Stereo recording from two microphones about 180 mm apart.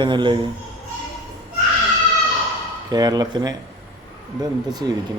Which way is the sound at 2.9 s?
20° right (ahead or behind).